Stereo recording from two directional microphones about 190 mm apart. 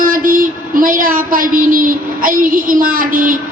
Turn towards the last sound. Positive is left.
turn(degrees=-45)  # may be behind; listen again after turning